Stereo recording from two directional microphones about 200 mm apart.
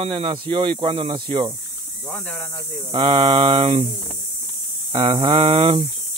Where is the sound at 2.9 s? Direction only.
25° right (ahead or behind).